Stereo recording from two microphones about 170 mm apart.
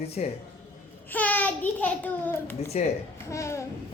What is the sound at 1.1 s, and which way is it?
A child's voice, 10° left (ahead or behind).